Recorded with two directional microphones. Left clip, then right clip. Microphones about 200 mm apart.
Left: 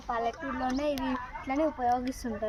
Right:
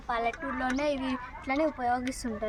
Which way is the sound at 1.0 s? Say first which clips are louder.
Left 1 dB; 50° right (ahead or behind).